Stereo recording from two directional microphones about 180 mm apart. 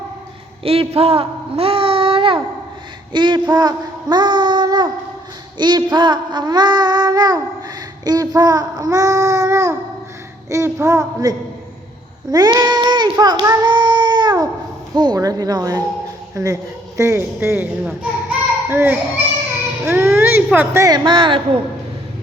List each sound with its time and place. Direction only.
0.6 s a sound: 30° right (ahead or behind)
3.1 s child singing: 25° right (ahead or behind)
10.5 s a man's voice: 15° right (ahead or behind)
12.3 s child singing: 20° right (ahead or behind)
16.3 s a man's voice: 20° right (ahead or behind)
20.5 s child singing: 15° right (ahead or behind); by 21.6 s 30° right (ahead or behind)